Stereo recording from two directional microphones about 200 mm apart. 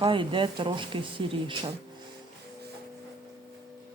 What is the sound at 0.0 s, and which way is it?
A woman's voice, 25° right (ahead or behind).